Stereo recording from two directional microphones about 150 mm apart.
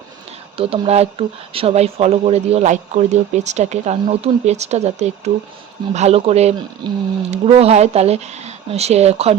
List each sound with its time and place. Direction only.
0.5 s speech: 40° right (ahead or behind)
6.8 s speech: 30° right (ahead or behind)
7.3 s speech: 45° right (ahead or behind)